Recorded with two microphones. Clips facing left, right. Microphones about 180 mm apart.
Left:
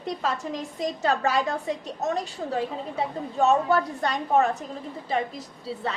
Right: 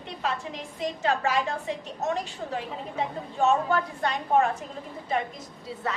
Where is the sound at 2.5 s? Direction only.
35° left (ahead or behind).